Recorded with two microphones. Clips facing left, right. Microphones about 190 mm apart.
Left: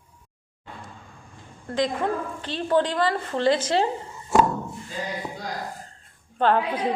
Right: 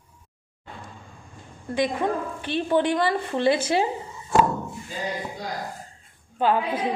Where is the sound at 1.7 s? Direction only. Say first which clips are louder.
Right 1 dB; 15° right (ahead or behind).